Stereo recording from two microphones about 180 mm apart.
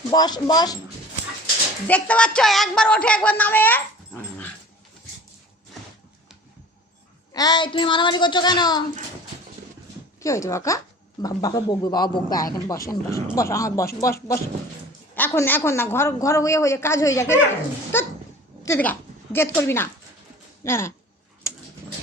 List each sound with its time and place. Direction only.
0.1 s speech: 25° left (ahead or behind)
1.9 s speech: 5° left (ahead or behind)
7.3 s speech: 20° left (ahead or behind)
10.2 s speech: 15° left (ahead or behind)
18.6 s speech: 10° left (ahead or behind)